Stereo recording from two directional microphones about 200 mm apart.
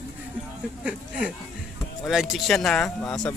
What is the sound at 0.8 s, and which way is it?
Speech, 5° right (ahead or behind).